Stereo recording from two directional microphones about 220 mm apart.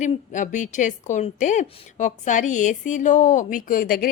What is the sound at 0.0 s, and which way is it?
A woman's voice, 35° left (ahead or behind).